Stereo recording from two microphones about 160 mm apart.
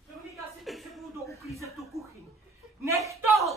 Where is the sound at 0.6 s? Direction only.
Centre (ahead or behind).